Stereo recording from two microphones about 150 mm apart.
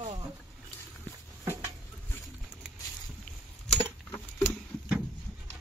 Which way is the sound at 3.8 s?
15° left (ahead or behind).